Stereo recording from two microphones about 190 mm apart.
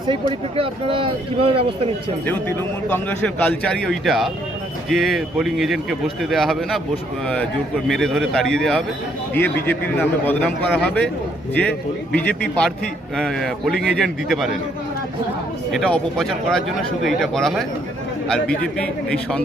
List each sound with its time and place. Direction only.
0.1 s speech: 25° right (ahead or behind)
2.2 s a man's voice: 10° left (ahead or behind)
7.9 s a man's voice: 5° left (ahead or behind)
12.1 s a man's voice: 5° left (ahead or behind)
15.7 s speech: centre (ahead or behind)